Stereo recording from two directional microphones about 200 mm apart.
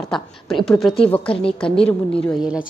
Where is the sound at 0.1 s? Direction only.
Centre (ahead or behind).